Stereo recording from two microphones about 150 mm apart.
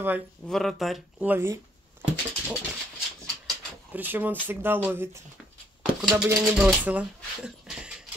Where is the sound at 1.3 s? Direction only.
15° right (ahead or behind).